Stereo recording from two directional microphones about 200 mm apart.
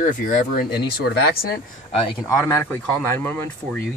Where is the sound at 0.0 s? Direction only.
45° left (ahead or behind).